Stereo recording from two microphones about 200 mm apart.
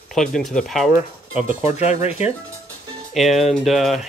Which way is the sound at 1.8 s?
35° left (ahead or behind).